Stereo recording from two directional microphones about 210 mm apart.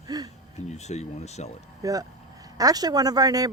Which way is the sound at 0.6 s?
30° left (ahead or behind).